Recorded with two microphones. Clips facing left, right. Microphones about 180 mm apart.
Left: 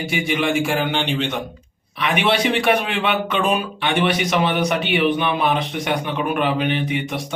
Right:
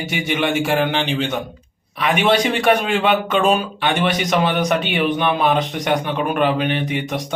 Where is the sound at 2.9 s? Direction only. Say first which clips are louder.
Right 4 dB; 35° right (ahead or behind).